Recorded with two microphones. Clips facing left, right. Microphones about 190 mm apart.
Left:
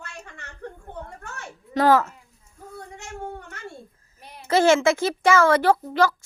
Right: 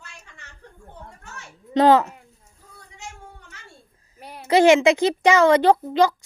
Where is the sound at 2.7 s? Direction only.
55° left (ahead or behind).